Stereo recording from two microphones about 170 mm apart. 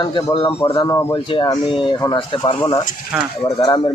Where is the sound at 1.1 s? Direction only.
30° left (ahead or behind).